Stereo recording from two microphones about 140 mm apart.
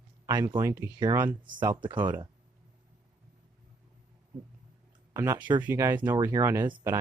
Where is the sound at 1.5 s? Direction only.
30° right (ahead or behind).